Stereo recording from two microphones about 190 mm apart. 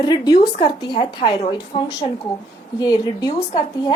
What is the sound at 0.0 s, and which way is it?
A woman's voice, 20° left (ahead or behind).